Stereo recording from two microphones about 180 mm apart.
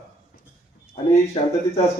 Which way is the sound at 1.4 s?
30° left (ahead or behind).